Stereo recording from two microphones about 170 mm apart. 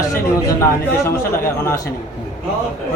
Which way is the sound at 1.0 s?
15° left (ahead or behind).